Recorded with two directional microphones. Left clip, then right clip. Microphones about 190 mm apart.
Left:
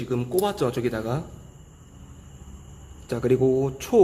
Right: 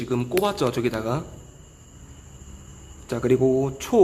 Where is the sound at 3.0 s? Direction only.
5° right (ahead or behind).